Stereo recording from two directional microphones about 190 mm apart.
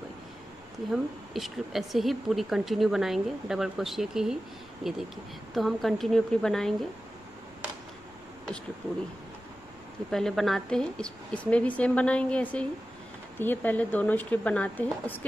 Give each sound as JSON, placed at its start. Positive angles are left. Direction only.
{"t": 0.9, "sound": "speech", "side_deg": 0}
{"t": 10.1, "sound": "speech", "side_deg": 0}